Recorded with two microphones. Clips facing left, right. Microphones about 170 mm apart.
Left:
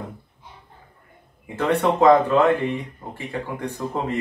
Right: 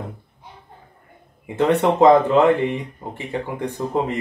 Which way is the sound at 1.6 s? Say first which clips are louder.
Right 3 dB; 25° right (ahead or behind).